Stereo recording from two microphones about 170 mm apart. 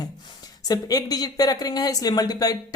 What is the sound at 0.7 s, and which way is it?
Speech, 20° left (ahead or behind).